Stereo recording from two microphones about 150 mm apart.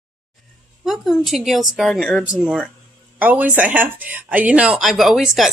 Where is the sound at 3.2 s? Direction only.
10° right (ahead or behind).